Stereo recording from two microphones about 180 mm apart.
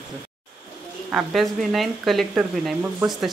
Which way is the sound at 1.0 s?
Centre (ahead or behind).